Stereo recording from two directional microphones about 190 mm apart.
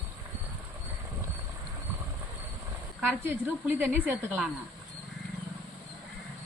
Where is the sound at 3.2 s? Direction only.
10° right (ahead or behind).